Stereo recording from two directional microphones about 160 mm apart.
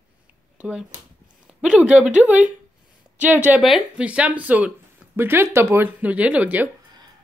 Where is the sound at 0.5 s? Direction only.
10° right (ahead or behind).